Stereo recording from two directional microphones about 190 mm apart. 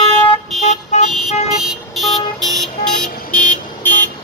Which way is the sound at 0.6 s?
35° left (ahead or behind).